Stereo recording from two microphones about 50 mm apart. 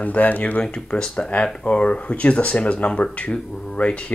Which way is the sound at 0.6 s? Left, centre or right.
Centre.